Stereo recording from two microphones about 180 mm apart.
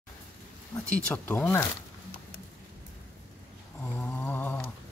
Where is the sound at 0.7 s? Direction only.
20° left (ahead or behind).